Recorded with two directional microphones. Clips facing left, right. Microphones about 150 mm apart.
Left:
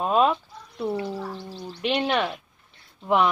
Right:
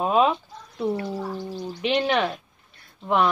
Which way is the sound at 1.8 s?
5° left (ahead or behind).